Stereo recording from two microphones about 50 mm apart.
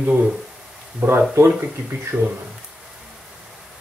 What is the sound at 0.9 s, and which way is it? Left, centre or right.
Speech, right.